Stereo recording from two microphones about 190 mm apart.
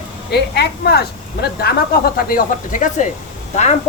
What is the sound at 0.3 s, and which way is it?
Speech, 60° left (ahead or behind).